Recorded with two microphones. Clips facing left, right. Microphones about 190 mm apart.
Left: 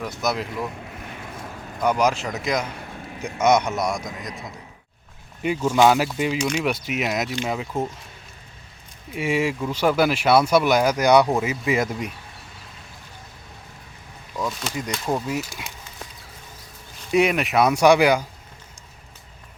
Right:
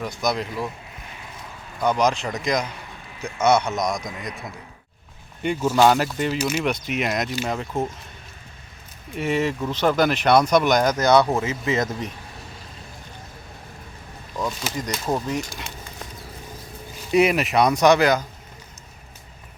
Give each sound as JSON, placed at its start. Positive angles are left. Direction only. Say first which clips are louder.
{"t": 0.0, "sound": "speech", "louder": "right 1 dB", "side_deg": 5}
{"t": 1.0, "sound": "vehicle", "louder": "left 3 dB", "side_deg": 55}
{"t": 1.8, "sound": "speech", "louder": "even", "side_deg": 10}
{"t": 2.6, "sound": "a man's voice", "louder": "left 2 dB", "side_deg": 50}
{"t": 3.2, "sound": "speech", "louder": "even", "side_deg": 15}
{"t": 5.7, "sound": "speech", "louder": "even", "side_deg": 5}
{"t": 9.1, "sound": "speech", "louder": "even", "side_deg": 10}
{"t": 14.3, "sound": "speech", "louder": "even", "side_deg": 0}
{"t": 17.1, "sound": "speech", "louder": "right 1 dB", "side_deg": 0}